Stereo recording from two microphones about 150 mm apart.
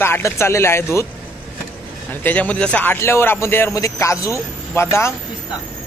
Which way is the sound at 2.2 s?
10° left (ahead or behind).